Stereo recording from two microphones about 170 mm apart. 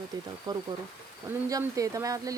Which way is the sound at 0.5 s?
25° right (ahead or behind).